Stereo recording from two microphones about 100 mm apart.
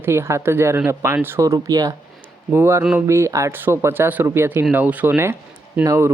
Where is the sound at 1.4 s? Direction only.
35° right (ahead or behind).